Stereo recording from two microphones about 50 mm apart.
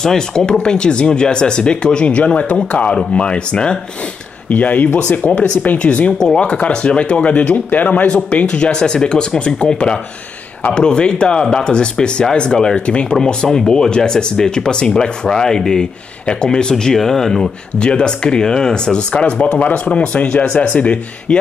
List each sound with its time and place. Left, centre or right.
0.0 s speech: centre
4.5 s speech: left
6.1 s speech: centre; by 21.4 s left